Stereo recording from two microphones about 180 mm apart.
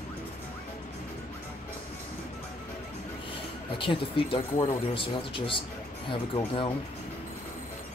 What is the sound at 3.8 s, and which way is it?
Speech, 30° left (ahead or behind).